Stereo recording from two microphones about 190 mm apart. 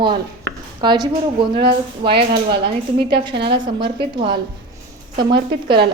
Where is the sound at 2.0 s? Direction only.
60° right (ahead or behind).